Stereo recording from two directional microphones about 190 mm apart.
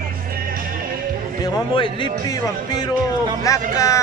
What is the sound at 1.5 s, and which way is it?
Speech, 25° left (ahead or behind).